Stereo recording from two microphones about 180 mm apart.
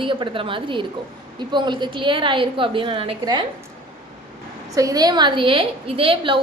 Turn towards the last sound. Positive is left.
turn(degrees=-30)  # may be behind; listen again after turning